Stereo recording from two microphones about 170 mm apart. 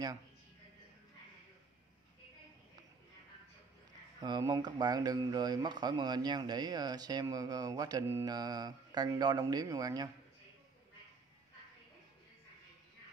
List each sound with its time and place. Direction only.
4.2 s speech: 25° right (ahead or behind)